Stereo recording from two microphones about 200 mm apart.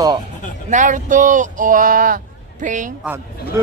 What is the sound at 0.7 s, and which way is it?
Speech, 40° right (ahead or behind).